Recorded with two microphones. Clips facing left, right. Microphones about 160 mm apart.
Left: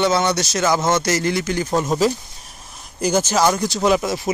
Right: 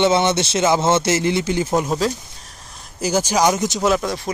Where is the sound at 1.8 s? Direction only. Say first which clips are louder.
Left 2 dB; centre (ahead or behind).